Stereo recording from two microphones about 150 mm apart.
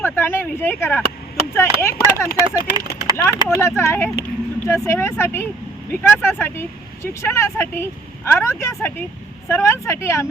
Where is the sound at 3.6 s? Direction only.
20° left (ahead or behind).